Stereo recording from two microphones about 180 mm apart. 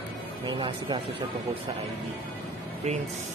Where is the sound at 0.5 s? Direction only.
25° right (ahead or behind).